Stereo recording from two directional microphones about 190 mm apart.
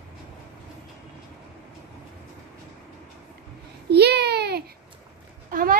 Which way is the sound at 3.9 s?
60° right (ahead or behind).